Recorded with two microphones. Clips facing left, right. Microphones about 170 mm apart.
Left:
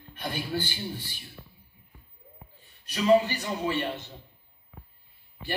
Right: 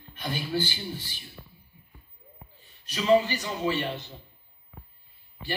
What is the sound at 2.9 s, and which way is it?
Speech, 55° left (ahead or behind).